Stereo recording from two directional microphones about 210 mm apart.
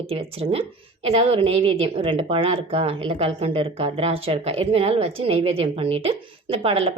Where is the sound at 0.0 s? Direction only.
25° right (ahead or behind).